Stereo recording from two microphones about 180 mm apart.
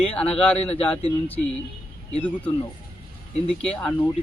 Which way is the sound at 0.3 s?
5° left (ahead or behind).